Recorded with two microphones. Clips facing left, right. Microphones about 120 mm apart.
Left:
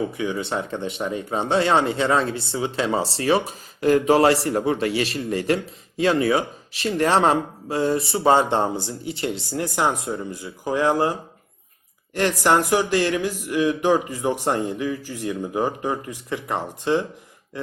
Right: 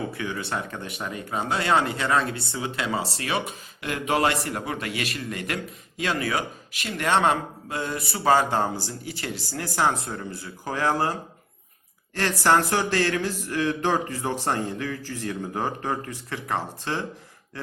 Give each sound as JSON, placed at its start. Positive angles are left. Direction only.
{"t": 0.1, "sound": "speech", "side_deg": 20}